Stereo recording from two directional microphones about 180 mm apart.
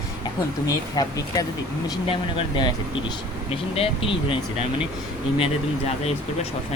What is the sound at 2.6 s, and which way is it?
Speech, 25° left (ahead or behind).